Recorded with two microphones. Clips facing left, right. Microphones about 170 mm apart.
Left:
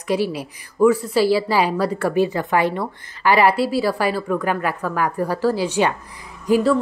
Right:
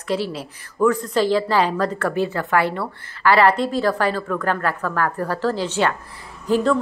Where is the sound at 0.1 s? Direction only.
15° left (ahead or behind).